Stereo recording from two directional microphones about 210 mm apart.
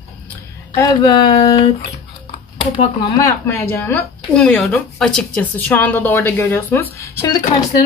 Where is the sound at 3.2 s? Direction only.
15° left (ahead or behind).